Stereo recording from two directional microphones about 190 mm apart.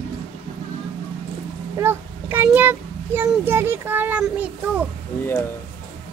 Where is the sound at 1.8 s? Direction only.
10° right (ahead or behind).